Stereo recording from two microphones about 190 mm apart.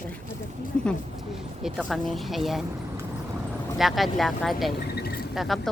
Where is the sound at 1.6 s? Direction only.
Centre (ahead or behind).